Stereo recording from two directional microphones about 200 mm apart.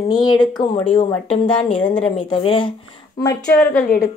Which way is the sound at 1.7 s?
25° left (ahead or behind).